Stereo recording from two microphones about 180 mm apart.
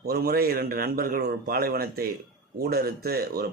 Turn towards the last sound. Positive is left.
turn(degrees=-60)  # may be behind; listen again after turning